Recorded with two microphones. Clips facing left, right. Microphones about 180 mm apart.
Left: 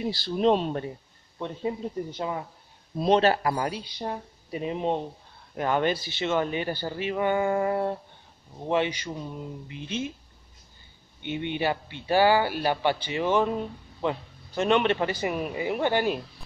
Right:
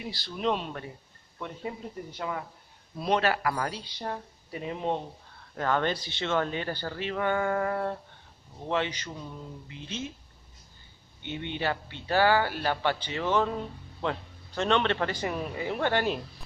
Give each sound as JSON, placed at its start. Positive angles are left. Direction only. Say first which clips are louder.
{"t": 0.0, "sound": "speech", "louder": "left 7 dB", "side_deg": 30}
{"t": 2.1, "sound": "speech", "louder": "left 3 dB", "side_deg": 25}
{"t": 11.2, "sound": "speech", "louder": "left 4 dB", "side_deg": 15}